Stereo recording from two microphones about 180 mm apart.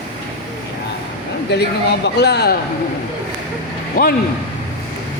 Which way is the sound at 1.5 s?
70° left (ahead or behind).